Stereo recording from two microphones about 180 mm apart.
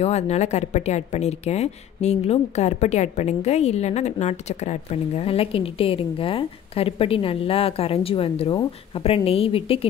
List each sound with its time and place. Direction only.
0.0 s a woman's voice: 35° left (ahead or behind)